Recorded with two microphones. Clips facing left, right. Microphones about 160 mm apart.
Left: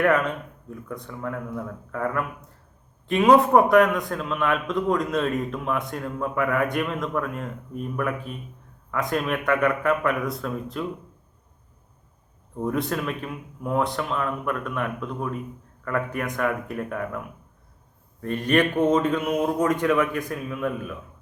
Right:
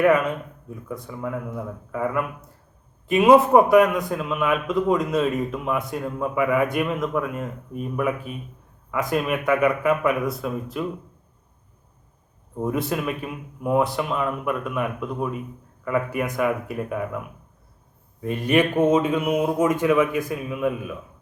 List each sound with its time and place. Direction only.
1.0 s a man's voice: 5° right (ahead or behind)
12.6 s a man's voice: 10° right (ahead or behind)